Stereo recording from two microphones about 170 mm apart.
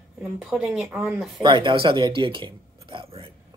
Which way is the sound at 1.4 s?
30° right (ahead or behind).